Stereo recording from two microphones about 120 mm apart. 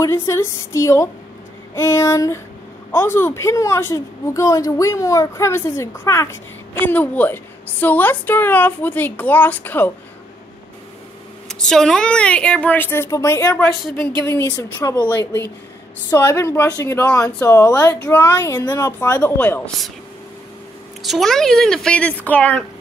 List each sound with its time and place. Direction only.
0.0 s a woman's voice: 25° left (ahead or behind)
11.4 s a woman's voice: 5° left (ahead or behind); by 15.0 s 25° left (ahead or behind)
16.1 s a woman's voice: 20° left (ahead or behind)
17.1 s a woman's voice: 10° left (ahead or behind)
17.5 s a woman's voice: 25° left (ahead or behind)
21.0 s speech: centre (ahead or behind)